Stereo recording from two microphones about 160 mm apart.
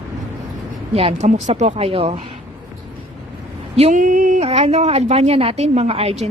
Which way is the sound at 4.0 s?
55° right (ahead or behind).